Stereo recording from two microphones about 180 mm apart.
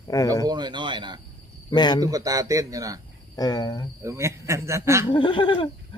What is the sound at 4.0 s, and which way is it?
A man's voice, 15° right (ahead or behind).